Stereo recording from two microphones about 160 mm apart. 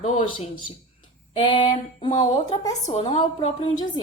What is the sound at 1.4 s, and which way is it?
A woman's voice, 30° left (ahead or behind).